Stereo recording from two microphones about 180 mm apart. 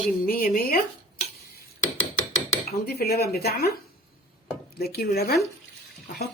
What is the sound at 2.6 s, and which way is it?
Speech, 60° left (ahead or behind).